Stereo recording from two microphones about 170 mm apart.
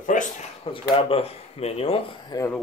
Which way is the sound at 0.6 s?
30° left (ahead or behind).